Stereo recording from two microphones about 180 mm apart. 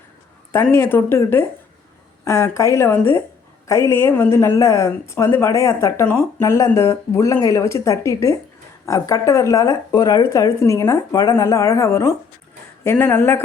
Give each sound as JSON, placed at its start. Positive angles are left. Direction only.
{"t": 0.5, "sound": "a woman's voice", "side_deg": 15}